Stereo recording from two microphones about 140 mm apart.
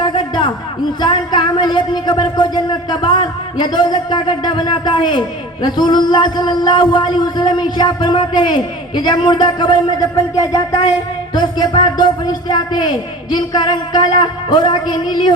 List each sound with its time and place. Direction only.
0.0 s a sound: 35° left (ahead or behind)
1.0 s speech: 30° left (ahead or behind)
10.3 s music: 25° left (ahead or behind)
11.3 s speech: 30° left (ahead or behind)